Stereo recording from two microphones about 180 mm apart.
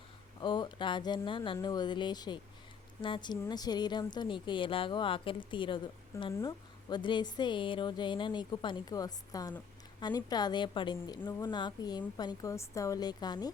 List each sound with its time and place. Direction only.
0.4 s a woman's voice: 25° left (ahead or behind)
11.2 s a woman's voice: 10° left (ahead or behind)
11.4 s a woman's voice: 25° left (ahead or behind)